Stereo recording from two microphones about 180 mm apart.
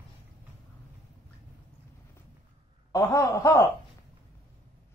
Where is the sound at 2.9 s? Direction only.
15° left (ahead or behind).